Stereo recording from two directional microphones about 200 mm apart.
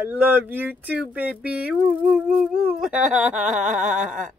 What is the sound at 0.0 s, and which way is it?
Speech, 10° right (ahead or behind).